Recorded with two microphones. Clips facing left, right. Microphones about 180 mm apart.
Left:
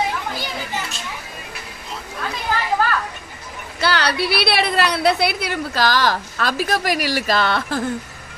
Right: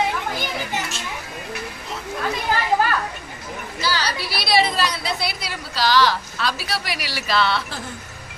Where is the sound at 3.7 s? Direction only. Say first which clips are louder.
Left 6 dB; 65° left (ahead or behind).